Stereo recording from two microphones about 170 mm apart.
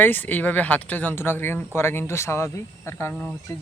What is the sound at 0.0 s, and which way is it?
Speech, 10° left (ahead or behind).